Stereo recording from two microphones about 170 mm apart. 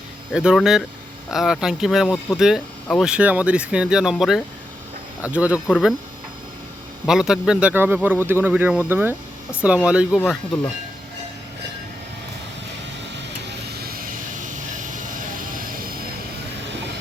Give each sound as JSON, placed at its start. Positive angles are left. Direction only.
{"t": 0.3, "sound": "speech", "side_deg": -5}
{"t": 7.0, "sound": "speech", "side_deg": -5}
{"t": 13.1, "sound": "vehicle", "side_deg": -90}